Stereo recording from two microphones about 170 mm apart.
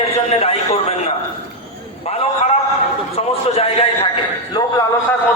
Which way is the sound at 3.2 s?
35° left (ahead or behind).